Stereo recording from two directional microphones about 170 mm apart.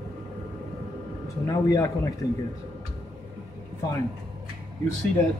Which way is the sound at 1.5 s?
20° left (ahead or behind).